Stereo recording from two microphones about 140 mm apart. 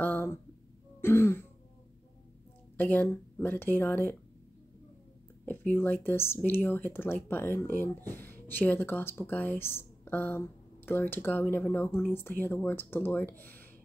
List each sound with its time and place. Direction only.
0.0 s a sound: 15° left (ahead or behind)
1.0 s speech: 15° left (ahead or behind)
2.8 s speech: 10° left (ahead or behind)
5.4 s speech: 15° left (ahead or behind)